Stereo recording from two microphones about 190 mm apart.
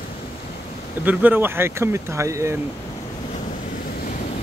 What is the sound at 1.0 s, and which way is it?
Speech, 10° right (ahead or behind).